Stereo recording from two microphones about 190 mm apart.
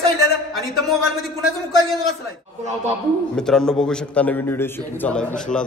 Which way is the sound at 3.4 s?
5° left (ahead or behind).